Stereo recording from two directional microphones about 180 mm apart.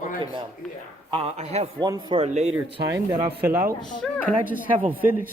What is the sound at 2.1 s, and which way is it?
Speech, 35° right (ahead or behind).